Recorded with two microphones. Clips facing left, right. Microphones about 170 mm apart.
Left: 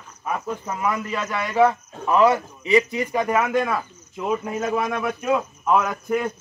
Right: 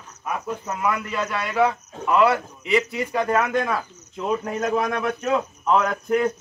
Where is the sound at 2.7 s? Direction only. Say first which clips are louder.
Left 2 dB; 15° left (ahead or behind).